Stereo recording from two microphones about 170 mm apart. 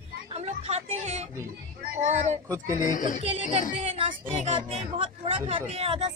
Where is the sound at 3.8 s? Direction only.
35° right (ahead or behind).